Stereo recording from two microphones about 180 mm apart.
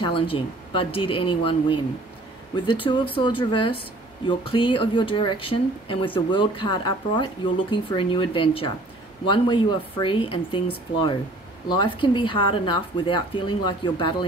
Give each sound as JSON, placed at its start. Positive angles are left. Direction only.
{"t": 0.0, "sound": "speech", "side_deg": 30}